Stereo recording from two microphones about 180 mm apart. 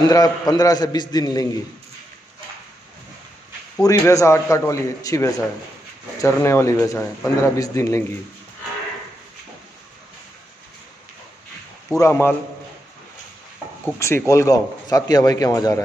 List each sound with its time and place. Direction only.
0.1 s speech: 20° left (ahead or behind)
3.8 s a man's voice: 20° left (ahead or behind)
11.9 s a man's voice: 15° left (ahead or behind)
13.9 s speech: 15° left (ahead or behind)